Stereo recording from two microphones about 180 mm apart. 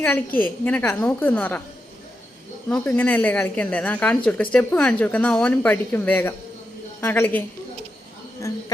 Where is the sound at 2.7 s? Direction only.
10° left (ahead or behind).